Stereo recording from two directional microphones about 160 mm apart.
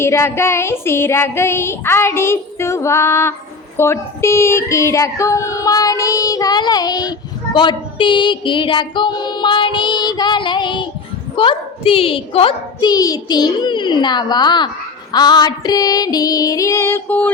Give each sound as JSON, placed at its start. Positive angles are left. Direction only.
{"t": 0.0, "sound": "child singing", "side_deg": 15}
{"t": 3.8, "sound": "female singing", "side_deg": 15}